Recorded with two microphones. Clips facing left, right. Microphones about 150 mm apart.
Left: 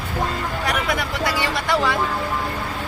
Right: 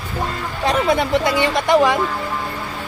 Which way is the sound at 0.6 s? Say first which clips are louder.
Right 9 dB; 25° right (ahead or behind).